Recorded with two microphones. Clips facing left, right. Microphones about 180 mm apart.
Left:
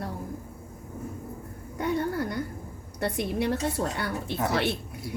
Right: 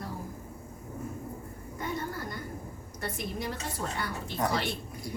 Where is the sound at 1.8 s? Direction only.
65° left (ahead or behind).